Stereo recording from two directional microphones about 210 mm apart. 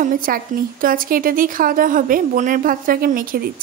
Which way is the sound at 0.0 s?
40° right (ahead or behind).